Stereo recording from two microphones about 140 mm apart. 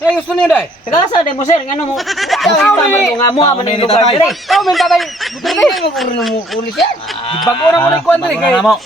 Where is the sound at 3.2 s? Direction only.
30° left (ahead or behind).